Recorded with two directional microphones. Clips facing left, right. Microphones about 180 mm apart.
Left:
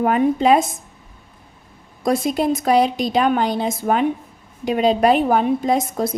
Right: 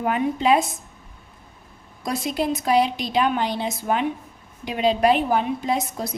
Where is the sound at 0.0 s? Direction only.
45° left (ahead or behind).